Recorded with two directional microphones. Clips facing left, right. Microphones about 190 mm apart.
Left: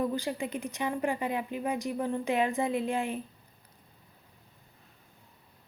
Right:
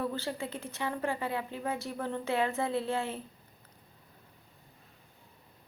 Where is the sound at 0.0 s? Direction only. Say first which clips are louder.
Left 4 dB; 15° left (ahead or behind).